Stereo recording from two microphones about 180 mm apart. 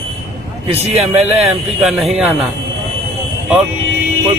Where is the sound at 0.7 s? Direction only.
35° right (ahead or behind).